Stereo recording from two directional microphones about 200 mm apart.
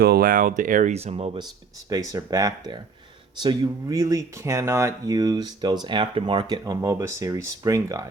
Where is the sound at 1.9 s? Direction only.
15° right (ahead or behind).